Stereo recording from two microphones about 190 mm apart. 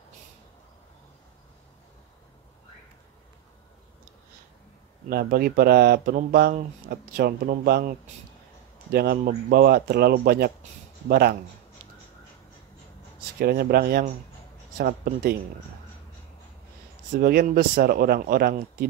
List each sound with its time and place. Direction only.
5.1 s speech: 55° right (ahead or behind)
8.9 s speech: 50° right (ahead or behind)
13.4 s speech: 55° right (ahead or behind)
17.1 s speech: 50° right (ahead or behind)